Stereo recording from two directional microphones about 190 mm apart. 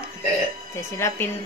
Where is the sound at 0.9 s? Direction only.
15° left (ahead or behind).